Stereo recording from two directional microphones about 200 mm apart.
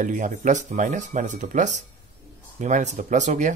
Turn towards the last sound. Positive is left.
turn(degrees=-35)  # may be behind; listen again after turning